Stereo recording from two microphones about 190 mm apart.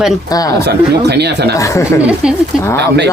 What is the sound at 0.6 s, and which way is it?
Speech, 60° right (ahead or behind).